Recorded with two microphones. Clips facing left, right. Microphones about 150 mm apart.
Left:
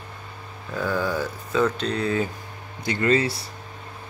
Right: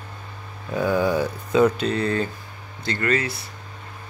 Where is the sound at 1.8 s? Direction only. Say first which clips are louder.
Right 1 dB; centre (ahead or behind).